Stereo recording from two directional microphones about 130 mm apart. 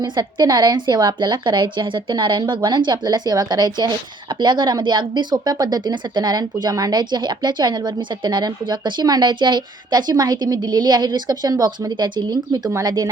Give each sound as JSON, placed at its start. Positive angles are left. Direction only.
{"t": 0.0, "sound": "speech", "side_deg": -35}